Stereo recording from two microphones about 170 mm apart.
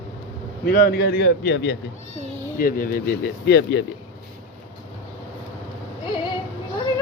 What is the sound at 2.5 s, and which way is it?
Speech, 55° left (ahead or behind).